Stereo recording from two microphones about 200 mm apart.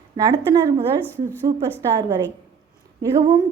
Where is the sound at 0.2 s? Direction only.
20° right (ahead or behind).